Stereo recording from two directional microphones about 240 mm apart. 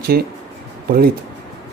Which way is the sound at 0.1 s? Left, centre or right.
Right.